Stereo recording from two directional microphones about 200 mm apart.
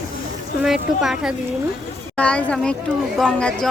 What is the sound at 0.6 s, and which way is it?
Speech, centre (ahead or behind).